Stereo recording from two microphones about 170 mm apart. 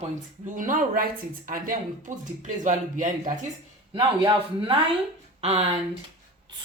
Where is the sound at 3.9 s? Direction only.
30° right (ahead or behind).